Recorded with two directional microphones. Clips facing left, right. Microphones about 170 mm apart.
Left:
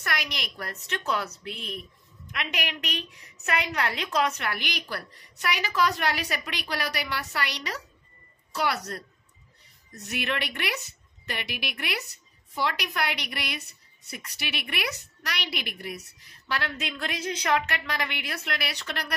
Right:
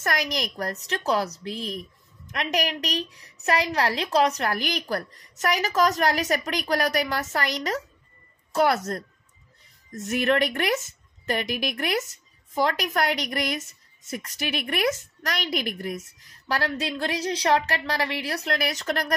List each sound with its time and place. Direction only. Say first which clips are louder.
0.0 s a woman's voice: right 6 dB; 40° right (ahead or behind)